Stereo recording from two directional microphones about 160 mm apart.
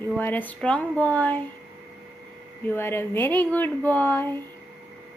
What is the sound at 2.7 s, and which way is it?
Speech, 15° left (ahead or behind).